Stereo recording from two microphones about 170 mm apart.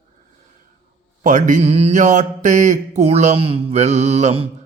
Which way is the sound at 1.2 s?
50° right (ahead or behind).